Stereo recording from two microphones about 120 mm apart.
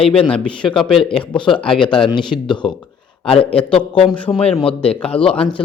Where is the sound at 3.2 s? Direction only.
50° left (ahead or behind).